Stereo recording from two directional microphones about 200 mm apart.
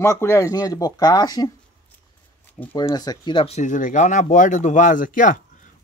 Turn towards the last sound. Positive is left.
turn(degrees=40)  # may be behind; listen again after turning